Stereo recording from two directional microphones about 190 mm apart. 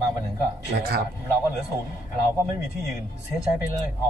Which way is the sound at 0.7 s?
55° right (ahead or behind).